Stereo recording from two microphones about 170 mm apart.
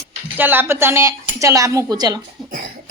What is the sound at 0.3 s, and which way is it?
A woman's voice, 10° right (ahead or behind).